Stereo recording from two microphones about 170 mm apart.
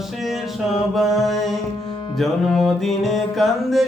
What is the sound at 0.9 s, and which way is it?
Mantra, centre (ahead or behind).